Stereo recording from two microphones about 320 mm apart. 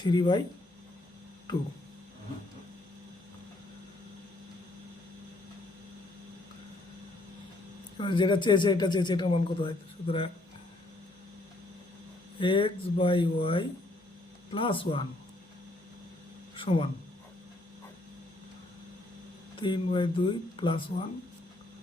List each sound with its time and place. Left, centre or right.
0.0 s speech: centre
7.9 s speech: centre
12.4 s speech: centre
16.6 s speech: centre
19.5 s speech: centre